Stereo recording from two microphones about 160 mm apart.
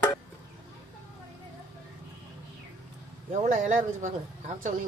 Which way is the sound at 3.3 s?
50° right (ahead or behind).